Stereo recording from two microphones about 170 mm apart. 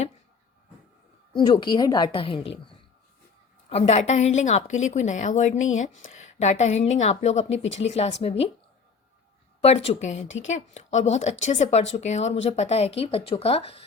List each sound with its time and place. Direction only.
1.3 s a woman's voice: 30° left (ahead or behind)
3.7 s a woman's voice: 40° left (ahead or behind)
9.6 s a woman's voice: 40° left (ahead or behind)